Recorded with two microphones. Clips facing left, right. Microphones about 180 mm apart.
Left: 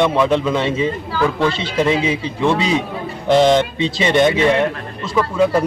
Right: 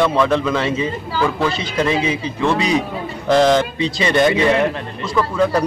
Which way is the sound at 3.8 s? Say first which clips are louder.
Left 1 dB; 25° left (ahead or behind).